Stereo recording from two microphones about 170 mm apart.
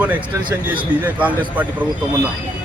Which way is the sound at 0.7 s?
10° right (ahead or behind).